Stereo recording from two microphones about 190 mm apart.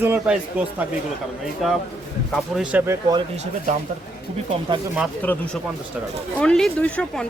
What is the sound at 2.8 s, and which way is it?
Speech, 15° right (ahead or behind).